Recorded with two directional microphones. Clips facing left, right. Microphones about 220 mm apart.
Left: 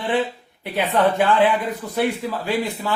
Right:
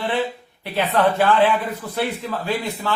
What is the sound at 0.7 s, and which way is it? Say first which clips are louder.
Speech: even; 15° left (ahead or behind).